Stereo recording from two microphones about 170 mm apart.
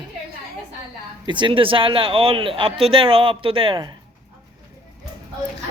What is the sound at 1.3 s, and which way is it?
Speech, 30° right (ahead or behind).